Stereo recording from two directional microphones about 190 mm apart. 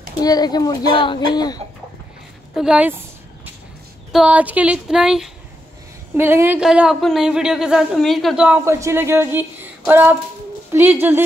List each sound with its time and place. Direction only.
0.2 s a child's voice: 20° left (ahead or behind)
2.5 s speech: 5° right (ahead or behind)
4.1 s a woman's voice: 5° right (ahead or behind)